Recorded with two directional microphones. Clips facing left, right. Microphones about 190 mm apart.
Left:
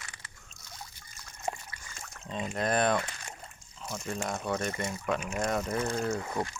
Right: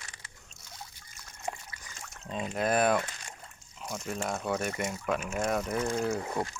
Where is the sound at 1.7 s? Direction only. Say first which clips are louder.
Left 1 dB; 15° right (ahead or behind).